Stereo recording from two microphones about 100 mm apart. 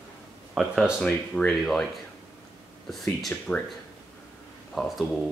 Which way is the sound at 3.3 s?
15° left (ahead or behind).